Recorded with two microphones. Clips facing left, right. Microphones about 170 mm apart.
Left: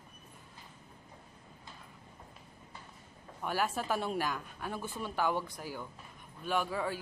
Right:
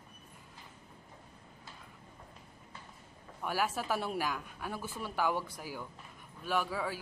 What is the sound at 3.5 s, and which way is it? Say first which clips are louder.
A man's voice: even; 5° right (ahead or behind).